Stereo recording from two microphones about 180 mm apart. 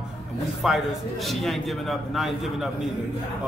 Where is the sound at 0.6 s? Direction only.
Centre (ahead or behind).